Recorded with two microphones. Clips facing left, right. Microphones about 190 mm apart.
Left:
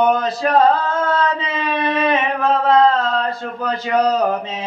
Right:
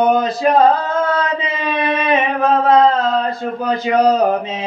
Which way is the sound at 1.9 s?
15° right (ahead or behind).